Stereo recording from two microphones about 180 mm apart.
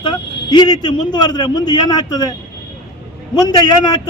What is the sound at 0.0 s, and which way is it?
A man's voice, 25° left (ahead or behind).